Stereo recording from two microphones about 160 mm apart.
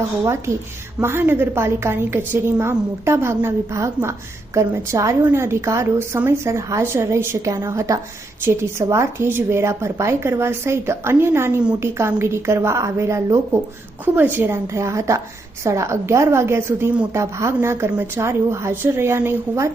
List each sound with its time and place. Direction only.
0.9 s a woman's voice: 15° right (ahead or behind)